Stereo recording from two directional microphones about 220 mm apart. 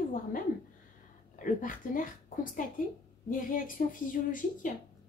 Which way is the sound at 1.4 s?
35° left (ahead or behind).